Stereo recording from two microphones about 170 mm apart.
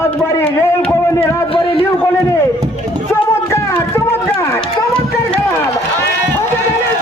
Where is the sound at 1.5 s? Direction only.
30° left (ahead or behind).